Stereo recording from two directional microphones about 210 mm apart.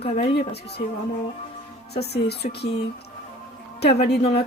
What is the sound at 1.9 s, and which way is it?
Speech, 50° left (ahead or behind).